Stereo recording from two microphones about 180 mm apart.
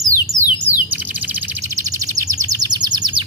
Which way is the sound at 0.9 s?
10° right (ahead or behind).